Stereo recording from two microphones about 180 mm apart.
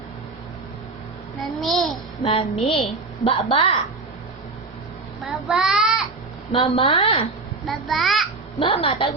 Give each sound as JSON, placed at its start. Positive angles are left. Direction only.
{"t": 1.4, "sound": "a sound", "side_deg": 0}
{"t": 2.2, "sound": "a woman's voice", "side_deg": 30}
{"t": 5.2, "sound": "child singing", "side_deg": 0}
{"t": 6.5, "sound": "a woman's voice", "side_deg": 30}
{"t": 7.6, "sound": "a sound", "side_deg": 0}
{"t": 8.5, "sound": "a woman's voice", "side_deg": 30}